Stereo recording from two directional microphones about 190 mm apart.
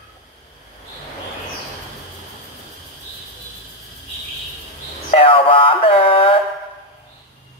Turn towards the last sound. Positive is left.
turn(degrees=30)  # may be behind; listen again after turning